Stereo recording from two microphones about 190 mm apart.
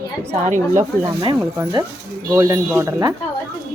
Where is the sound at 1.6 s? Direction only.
20° right (ahead or behind).